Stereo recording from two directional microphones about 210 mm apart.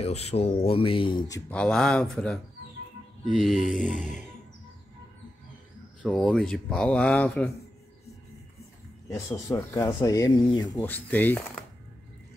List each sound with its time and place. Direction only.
0.0 s speech: 30° left (ahead or behind)
1.5 s speech: 5° left (ahead or behind)
6.0 s speech: 5° left (ahead or behind)
9.1 s speech: 15° left (ahead or behind)
10.8 s speech: 10° left (ahead or behind)